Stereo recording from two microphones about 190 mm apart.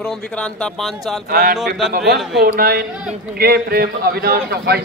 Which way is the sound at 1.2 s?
50° right (ahead or behind).